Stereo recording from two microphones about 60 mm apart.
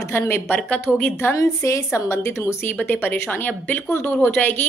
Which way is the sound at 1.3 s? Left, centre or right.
Left.